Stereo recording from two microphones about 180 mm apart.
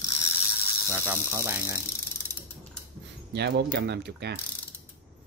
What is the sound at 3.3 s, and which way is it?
Speech, 70° right (ahead or behind).